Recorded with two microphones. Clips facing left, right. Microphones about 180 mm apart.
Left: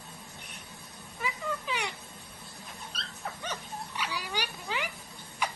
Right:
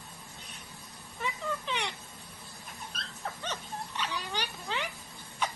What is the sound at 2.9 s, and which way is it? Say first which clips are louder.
Dog: even; 50° right (ahead or behind).